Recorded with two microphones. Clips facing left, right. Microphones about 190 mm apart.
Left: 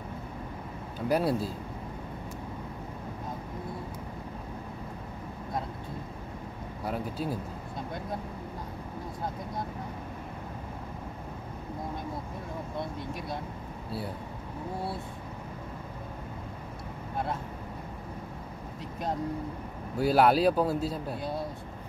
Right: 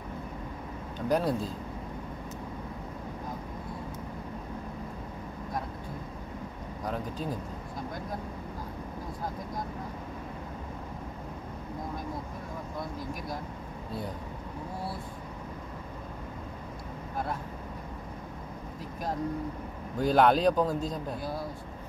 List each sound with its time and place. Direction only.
0.9 s speech: 5° left (ahead or behind)
6.8 s speech: 10° left (ahead or behind)
12.7 s speech: 25° left (ahead or behind)
20.0 s speech: 5° left (ahead or behind)
21.2 s speech: 25° left (ahead or behind)